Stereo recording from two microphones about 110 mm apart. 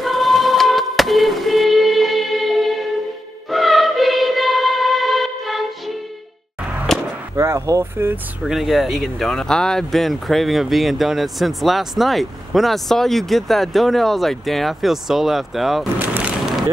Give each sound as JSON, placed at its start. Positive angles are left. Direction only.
{"t": 0.0, "sound": "music", "side_deg": 0}
{"t": 6.9, "sound": "whip", "side_deg": 5}
{"t": 7.3, "sound": "speech", "side_deg": -25}
{"t": 8.5, "sound": "speech", "side_deg": 0}
{"t": 16.0, "sound": "a sound", "side_deg": -10}